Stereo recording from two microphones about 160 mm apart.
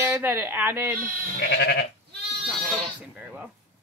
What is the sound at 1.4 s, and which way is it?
Goat, 80° left.